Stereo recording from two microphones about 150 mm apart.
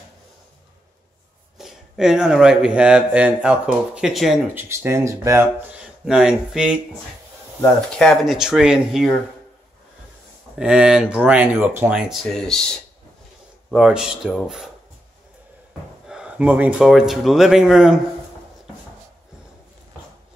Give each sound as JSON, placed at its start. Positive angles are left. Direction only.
{"t": 1.6, "sound": "speech", "side_deg": -5}
{"t": 4.6, "sound": "speech", "side_deg": -15}
{"t": 5.8, "sound": "speech", "side_deg": -5}
{"t": 10.6, "sound": "speech", "side_deg": -5}
{"t": 12.1, "sound": "speech", "side_deg": 0}
{"t": 13.7, "sound": "speech", "side_deg": 0}
{"t": 16.1, "sound": "speech", "side_deg": -5}